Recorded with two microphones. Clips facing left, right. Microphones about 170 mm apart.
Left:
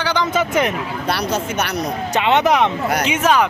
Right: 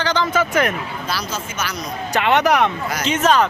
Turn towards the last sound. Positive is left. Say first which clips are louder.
# even
turn(degrees=10)  # may be behind; listen again after turning